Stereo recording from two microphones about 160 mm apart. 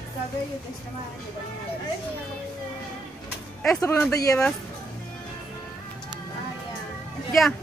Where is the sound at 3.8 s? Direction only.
15° left (ahead or behind).